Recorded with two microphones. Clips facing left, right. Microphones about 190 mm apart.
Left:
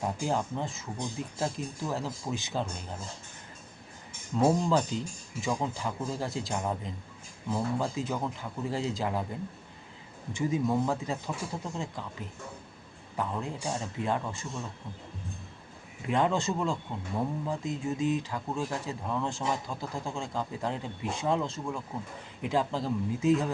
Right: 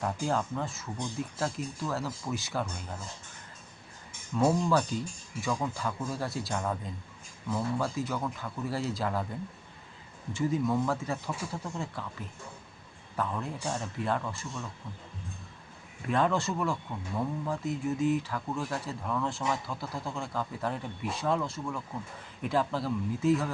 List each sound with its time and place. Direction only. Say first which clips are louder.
0.0 s speech: even; 20° left (ahead or behind)
4.4 s speech: left 1 dB; 20° left (ahead or behind)
16.0 s speech: even; 20° left (ahead or behind)